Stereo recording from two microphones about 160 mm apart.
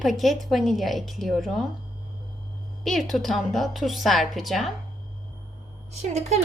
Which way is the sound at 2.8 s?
Centre (ahead or behind).